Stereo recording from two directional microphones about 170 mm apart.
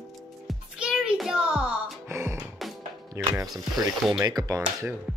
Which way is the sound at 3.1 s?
20° right (ahead or behind).